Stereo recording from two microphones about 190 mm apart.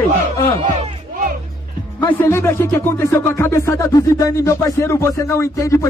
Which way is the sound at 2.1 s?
15° left (ahead or behind).